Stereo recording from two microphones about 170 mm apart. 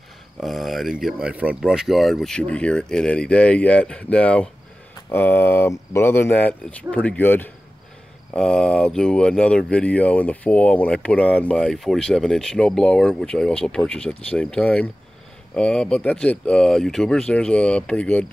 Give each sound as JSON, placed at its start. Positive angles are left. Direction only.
{"t": 0.4, "sound": "speech", "side_deg": 0}